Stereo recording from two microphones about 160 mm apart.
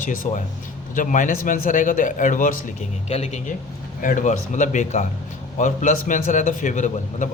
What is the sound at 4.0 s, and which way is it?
Speech, 55° left (ahead or behind).